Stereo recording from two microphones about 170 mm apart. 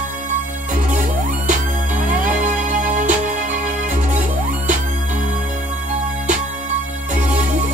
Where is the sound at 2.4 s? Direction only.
45° right (ahead or behind).